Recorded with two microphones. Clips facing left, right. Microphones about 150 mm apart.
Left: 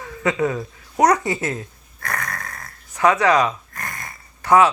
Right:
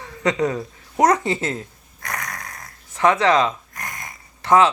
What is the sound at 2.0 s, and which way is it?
Dog, 15° right (ahead or behind).